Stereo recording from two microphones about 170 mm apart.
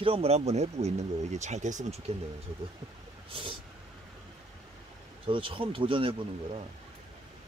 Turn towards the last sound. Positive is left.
turn(degrees=-30)  # may be behind; listen again after turning